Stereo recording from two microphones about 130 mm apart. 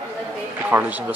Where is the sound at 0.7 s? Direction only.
10° right (ahead or behind).